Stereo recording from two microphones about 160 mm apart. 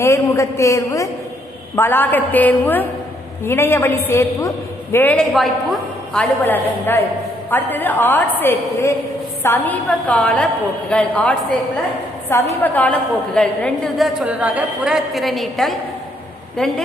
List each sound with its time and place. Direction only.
0.0 s a man's voice: 20° left (ahead or behind)
5.3 s a woman's voice: centre (ahead or behind)
6.4 s a woman's voice: 10° left (ahead or behind)
12.5 s a woman's voice: 10° left (ahead or behind)